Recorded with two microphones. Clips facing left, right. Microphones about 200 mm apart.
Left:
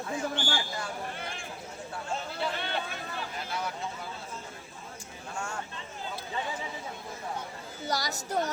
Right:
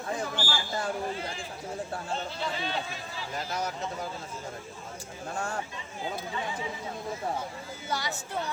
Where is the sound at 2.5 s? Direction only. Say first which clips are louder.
Right 1 dB; 60° left (ahead or behind).